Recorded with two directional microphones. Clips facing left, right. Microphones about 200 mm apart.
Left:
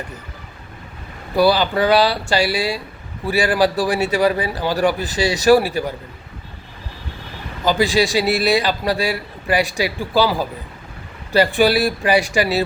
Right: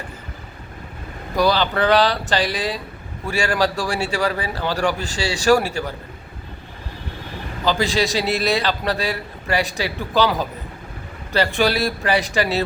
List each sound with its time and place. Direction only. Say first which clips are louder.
1.4 s a man's voice: left 3 dB; 10° left (ahead or behind)
7.6 s a man's voice: left 3 dB; 15° left (ahead or behind)